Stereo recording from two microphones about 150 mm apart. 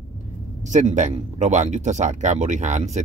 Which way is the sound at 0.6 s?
55° right (ahead or behind).